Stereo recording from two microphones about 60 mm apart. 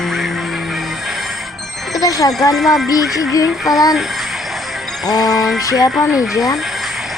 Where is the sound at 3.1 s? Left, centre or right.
Left.